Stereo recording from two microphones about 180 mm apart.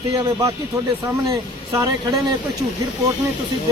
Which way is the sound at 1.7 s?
20° right (ahead or behind).